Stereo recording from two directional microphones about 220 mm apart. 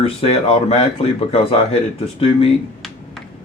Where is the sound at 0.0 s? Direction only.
25° left (ahead or behind).